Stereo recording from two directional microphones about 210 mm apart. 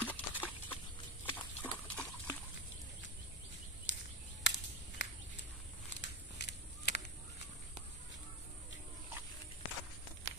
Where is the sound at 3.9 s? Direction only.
60° left (ahead or behind).